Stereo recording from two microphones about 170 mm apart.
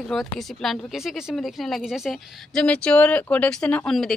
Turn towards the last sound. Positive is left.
turn(degrees=5)  # may be behind; listen again after turning